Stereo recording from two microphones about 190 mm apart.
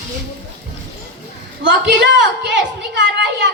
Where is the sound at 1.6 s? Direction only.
70° right (ahead or behind).